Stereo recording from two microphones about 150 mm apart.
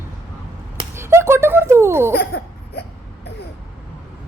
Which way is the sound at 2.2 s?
90° left.